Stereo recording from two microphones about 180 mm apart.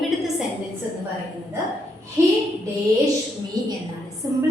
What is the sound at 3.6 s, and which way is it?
Speech, 20° right (ahead or behind).